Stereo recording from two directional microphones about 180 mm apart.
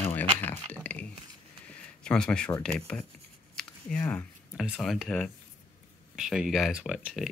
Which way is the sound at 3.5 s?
5° left (ahead or behind).